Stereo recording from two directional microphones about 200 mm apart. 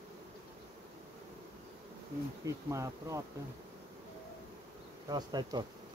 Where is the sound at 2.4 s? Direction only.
15° right (ahead or behind).